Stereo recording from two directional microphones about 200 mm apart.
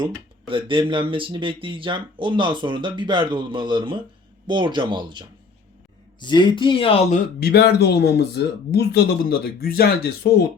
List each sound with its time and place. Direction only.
0.0 s speech: 25° right (ahead or behind)
6.1 s speech: 25° left (ahead or behind)
7.3 s speech: 50° left (ahead or behind)